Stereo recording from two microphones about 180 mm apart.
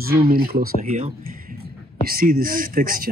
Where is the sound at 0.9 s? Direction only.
40° right (ahead or behind).